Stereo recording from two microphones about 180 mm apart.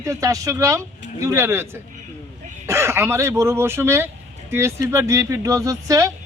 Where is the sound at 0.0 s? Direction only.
20° right (ahead or behind).